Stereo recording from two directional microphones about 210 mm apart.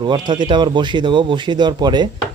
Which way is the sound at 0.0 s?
20° right (ahead or behind).